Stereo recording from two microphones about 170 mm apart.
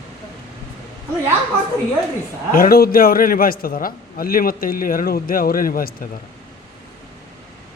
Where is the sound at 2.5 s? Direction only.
60° left (ahead or behind).